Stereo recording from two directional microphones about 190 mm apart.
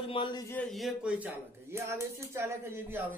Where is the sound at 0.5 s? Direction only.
5° left (ahead or behind).